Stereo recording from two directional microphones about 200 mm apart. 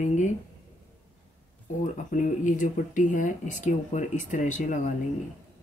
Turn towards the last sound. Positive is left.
turn(degrees=40)  # may be behind; listen again after turning